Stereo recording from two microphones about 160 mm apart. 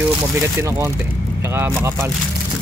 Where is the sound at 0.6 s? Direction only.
15° right (ahead or behind).